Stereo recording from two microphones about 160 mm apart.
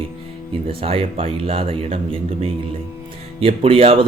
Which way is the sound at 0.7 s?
35° right (ahead or behind).